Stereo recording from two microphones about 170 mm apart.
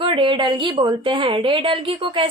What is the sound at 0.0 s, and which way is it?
Speech, 30° right (ahead or behind).